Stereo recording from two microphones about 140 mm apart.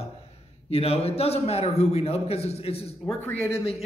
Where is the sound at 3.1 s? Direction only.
10° left (ahead or behind).